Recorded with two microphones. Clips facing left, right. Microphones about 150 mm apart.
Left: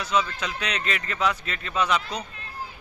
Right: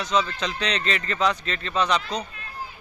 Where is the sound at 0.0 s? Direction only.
5° left (ahead or behind).